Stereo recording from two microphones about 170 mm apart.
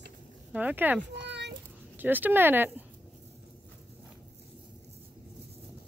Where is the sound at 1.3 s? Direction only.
90° right.